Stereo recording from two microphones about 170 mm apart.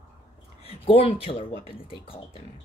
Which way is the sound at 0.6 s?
35° left (ahead or behind).